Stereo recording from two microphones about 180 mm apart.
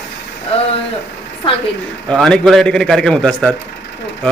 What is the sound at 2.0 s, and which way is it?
Speech, 5° left (ahead or behind).